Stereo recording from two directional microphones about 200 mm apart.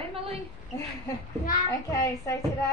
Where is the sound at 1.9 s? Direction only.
15° left (ahead or behind).